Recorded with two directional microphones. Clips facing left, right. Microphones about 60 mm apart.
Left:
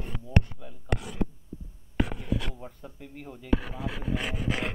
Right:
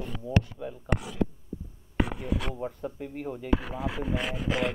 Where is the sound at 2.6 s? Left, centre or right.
Right.